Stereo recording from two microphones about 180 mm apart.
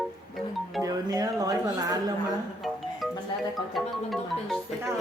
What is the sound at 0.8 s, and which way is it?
Speech, 20° right (ahead or behind).